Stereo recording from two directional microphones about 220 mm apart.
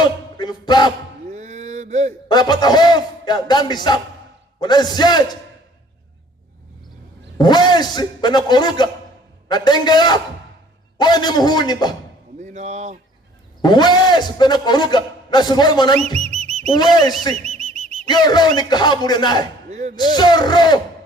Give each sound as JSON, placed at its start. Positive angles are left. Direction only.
{"t": 0.0, "sound": "music", "side_deg": 20}
{"t": 1.3, "sound": "a sound", "side_deg": -30}
{"t": 2.3, "sound": "a man's voice", "side_deg": 20}
{"t": 7.3, "sound": "a man's voice", "side_deg": 20}
{"t": 12.4, "sound": "a sound", "side_deg": -30}
{"t": 13.6, "sound": "a man's voice", "side_deg": 20}
{"t": 16.1, "sound": "music", "side_deg": -30}
{"t": 16.7, "sound": "a man's voice", "side_deg": 20}
{"t": 17.5, "sound": "a sound", "side_deg": -30}
{"t": 18.1, "sound": "a man's voice", "side_deg": 20}